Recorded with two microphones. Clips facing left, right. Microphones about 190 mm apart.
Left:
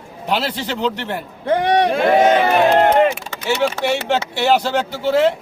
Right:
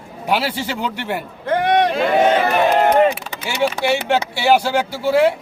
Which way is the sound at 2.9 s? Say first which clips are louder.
Even; 15° right (ahead or behind).